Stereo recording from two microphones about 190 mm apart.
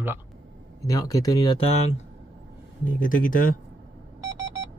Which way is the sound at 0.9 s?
20° left (ahead or behind).